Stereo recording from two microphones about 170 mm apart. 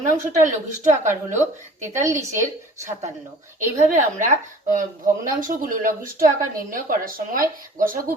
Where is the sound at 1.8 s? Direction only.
15° right (ahead or behind).